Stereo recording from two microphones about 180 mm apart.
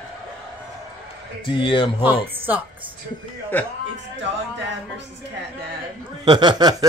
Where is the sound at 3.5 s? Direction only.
10° left (ahead or behind).